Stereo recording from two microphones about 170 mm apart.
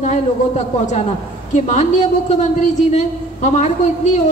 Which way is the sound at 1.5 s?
45° left (ahead or behind).